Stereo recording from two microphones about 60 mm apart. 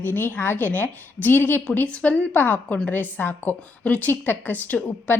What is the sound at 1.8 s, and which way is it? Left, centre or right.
A woman's voice, left.